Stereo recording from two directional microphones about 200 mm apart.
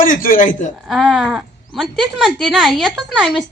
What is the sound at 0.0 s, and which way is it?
Speech, 45° left (ahead or behind).